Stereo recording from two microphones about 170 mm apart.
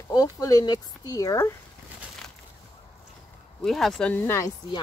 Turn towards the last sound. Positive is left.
turn(degrees=20)  # may be behind; listen again after turning